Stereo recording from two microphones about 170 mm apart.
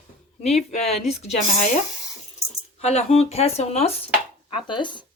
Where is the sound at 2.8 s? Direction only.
40° left (ahead or behind).